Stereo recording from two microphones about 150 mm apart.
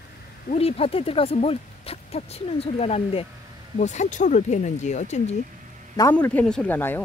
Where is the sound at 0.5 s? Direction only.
40° left (ahead or behind).